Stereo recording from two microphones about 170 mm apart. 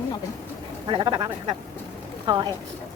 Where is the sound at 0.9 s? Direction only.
30° right (ahead or behind).